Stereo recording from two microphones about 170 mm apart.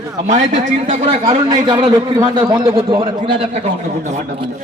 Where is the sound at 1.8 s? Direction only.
25° right (ahead or behind).